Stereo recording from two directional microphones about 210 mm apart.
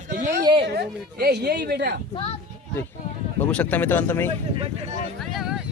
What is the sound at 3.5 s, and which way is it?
Speech, 5° left (ahead or behind).